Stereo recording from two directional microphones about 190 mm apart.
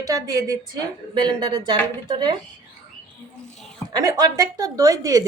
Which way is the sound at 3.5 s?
5° left (ahead or behind).